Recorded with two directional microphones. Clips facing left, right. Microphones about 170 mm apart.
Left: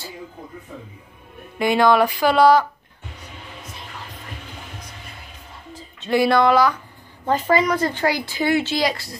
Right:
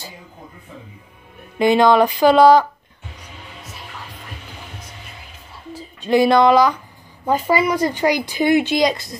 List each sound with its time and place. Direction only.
1.6 s speech: 20° right (ahead or behind)
5.7 s speech: 10° right (ahead or behind)